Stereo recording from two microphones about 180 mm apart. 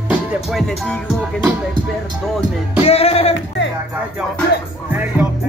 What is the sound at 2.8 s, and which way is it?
Music, 35° left (ahead or behind).